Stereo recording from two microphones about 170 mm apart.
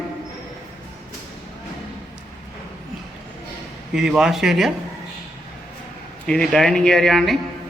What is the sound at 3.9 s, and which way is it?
Speech, 5° right (ahead or behind).